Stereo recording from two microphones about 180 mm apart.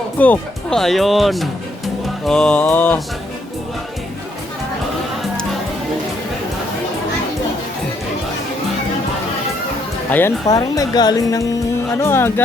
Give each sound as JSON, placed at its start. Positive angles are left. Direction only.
{"t": 0.2, "sound": "speech", "side_deg": 5}
{"t": 2.2, "sound": "mantra", "side_deg": 5}
{"t": 10.1, "sound": "speech", "side_deg": 10}
{"t": 11.9, "sound": "mantra", "side_deg": 15}